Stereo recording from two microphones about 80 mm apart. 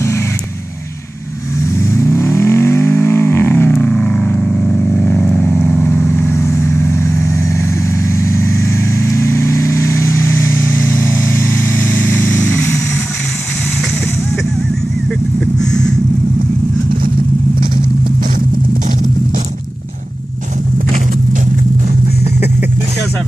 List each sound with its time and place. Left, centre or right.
1.8 s vehicle: left
3.9 s vehicle: centre; by 10.3 s left
11.3 s vehicle: left
15.4 s vehicle: centre